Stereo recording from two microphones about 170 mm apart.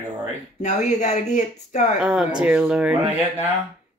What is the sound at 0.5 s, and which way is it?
Speech, 45° left (ahead or behind).